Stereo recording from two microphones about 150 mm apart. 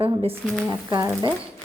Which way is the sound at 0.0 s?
40° right (ahead or behind).